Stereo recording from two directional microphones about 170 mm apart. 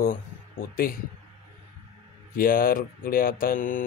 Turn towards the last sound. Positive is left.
turn(degrees=50)  # may be behind; listen again after turning